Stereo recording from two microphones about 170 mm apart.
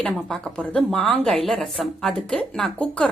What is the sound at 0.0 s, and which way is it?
A woman's voice, 5° left (ahead or behind).